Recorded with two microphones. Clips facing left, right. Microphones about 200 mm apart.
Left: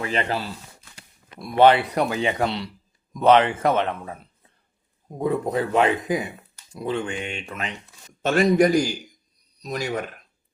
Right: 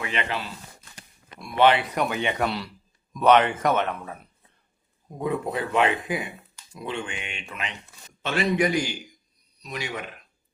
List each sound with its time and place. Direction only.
0.0 s speech: 35° left (ahead or behind)
5.2 s speech: 40° left (ahead or behind)